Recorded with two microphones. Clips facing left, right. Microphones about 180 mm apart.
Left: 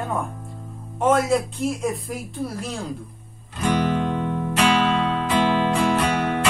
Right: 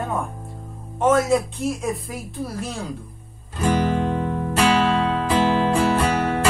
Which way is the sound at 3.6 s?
40° right (ahead or behind).